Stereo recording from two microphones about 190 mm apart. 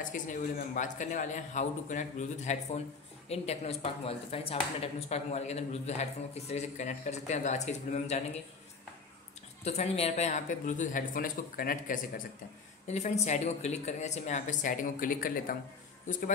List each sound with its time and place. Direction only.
0.0 s a man's voice: 45° left (ahead or behind)
9.7 s a man's voice: 35° left (ahead or behind)
12.8 s a man's voice: 35° left (ahead or behind)